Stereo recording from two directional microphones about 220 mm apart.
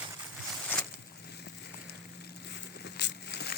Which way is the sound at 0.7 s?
10° left (ahead or behind).